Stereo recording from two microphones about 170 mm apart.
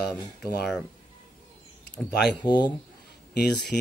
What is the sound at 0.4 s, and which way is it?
Speech, centre (ahead or behind).